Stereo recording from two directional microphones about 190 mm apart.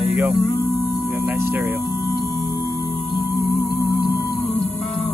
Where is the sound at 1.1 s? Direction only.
5° right (ahead or behind).